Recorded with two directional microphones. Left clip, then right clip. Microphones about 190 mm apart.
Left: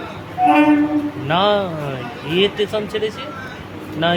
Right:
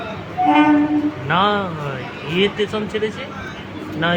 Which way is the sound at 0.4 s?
10° right (ahead or behind).